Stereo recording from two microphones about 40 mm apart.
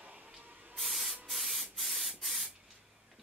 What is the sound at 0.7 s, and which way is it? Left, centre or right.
Spray, centre.